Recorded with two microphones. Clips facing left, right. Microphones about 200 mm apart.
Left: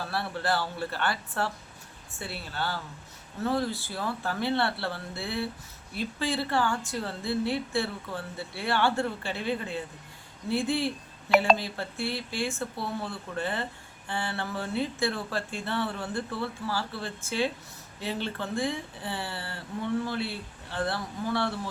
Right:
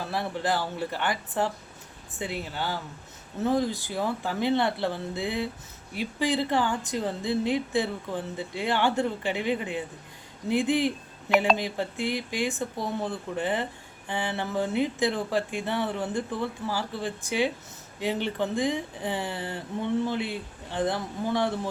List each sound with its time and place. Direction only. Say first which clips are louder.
0.1 s a woman's voice: right 2 dB; 15° right (ahead or behind)